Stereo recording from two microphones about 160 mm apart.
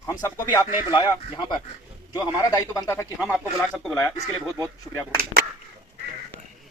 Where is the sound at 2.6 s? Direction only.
20° left (ahead or behind).